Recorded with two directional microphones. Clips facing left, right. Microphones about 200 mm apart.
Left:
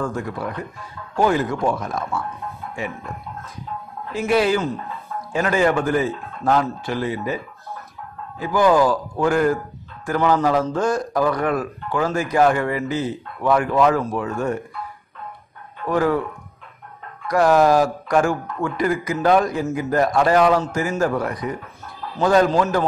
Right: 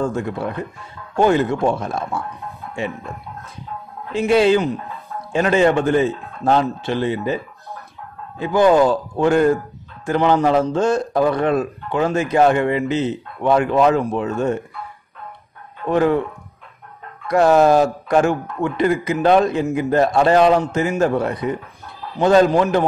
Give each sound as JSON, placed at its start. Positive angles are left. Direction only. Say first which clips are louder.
{"t": 0.0, "sound": "a man's voice", "louder": "right 4 dB", "side_deg": -25}
{"t": 4.3, "sound": "a man's voice", "louder": "right 4 dB", "side_deg": -25}
{"t": 8.4, "sound": "a man's voice", "louder": "right 3 dB", "side_deg": -25}
{"t": 15.8, "sound": "speech", "louder": "right 3 dB", "side_deg": -25}
{"t": 17.3, "sound": "a man's voice", "louder": "right 2 dB", "side_deg": -25}